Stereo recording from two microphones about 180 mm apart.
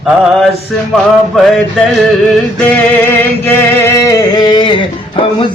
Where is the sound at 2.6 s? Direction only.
10° left (ahead or behind).